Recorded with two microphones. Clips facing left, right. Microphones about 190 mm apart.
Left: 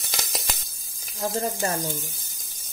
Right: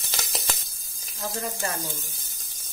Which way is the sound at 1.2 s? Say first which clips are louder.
Left 5 dB; 40° left (ahead or behind).